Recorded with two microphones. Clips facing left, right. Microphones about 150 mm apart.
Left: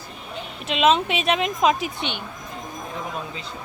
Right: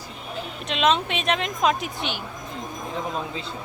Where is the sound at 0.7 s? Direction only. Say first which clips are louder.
Left 3 dB; 5° left (ahead or behind).